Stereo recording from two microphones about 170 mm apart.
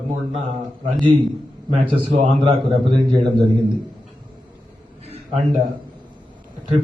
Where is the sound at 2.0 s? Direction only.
35° right (ahead or behind).